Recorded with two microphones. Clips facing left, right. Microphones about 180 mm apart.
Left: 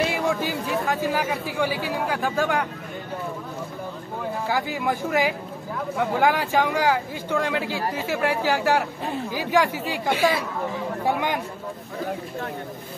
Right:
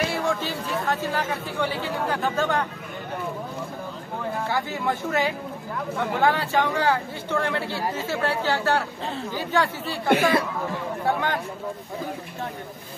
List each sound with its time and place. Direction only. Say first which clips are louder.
0.1 s speech: left 2 dB; 10° left (ahead or behind)
4.5 s speech: left 3 dB; 10° left (ahead or behind)
10.0 s speech: right 3 dB; 60° right (ahead or behind)
11.1 s speech: even; 15° left (ahead or behind)